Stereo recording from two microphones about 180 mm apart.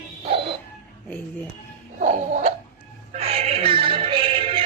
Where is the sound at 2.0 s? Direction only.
40° right (ahead or behind).